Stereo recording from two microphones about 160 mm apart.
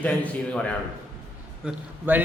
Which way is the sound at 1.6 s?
10° right (ahead or behind).